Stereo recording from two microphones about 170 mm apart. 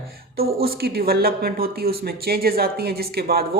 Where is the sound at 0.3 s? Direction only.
65° right (ahead or behind).